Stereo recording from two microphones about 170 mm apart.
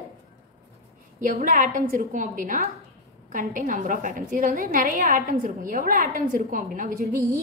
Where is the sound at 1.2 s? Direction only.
50° right (ahead or behind).